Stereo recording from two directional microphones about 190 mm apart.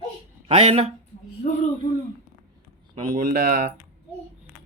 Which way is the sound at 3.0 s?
45° right (ahead or behind).